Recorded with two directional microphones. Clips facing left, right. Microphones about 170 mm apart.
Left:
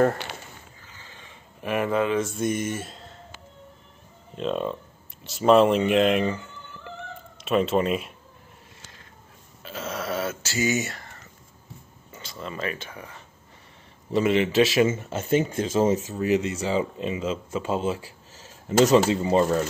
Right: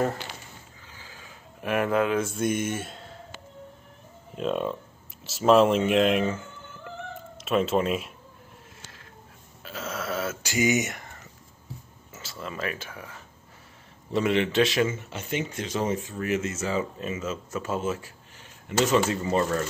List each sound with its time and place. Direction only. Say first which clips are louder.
0.9 s a sound: right 2 dB; 5° right (ahead or behind)
4.4 s speech: even; 5° right (ahead or behind)
9.6 s burping: left 2 dB; centre (ahead or behind)
10.4 s speech: right 5 dB; 15° right (ahead or behind)
12.1 s speech: left 1 dB; 5° right (ahead or behind)
15.0 s speech: left 8 dB; 45° left (ahead or behind)
15.7 s speech: left 6 dB; 25° left (ahead or behind)
19.2 s speech: left 4 dB; 20° left (ahead or behind)